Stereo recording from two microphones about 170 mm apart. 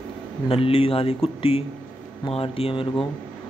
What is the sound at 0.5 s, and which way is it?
Speech, 35° left (ahead or behind).